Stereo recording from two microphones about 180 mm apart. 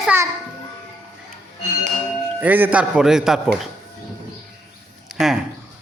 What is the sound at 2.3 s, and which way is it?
Speech, 10° right (ahead or behind).